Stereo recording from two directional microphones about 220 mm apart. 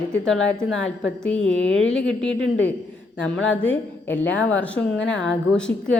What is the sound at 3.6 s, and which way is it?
A woman's voice, 5° left (ahead or behind).